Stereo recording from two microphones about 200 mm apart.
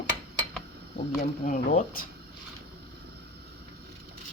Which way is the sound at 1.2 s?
45° left (ahead or behind).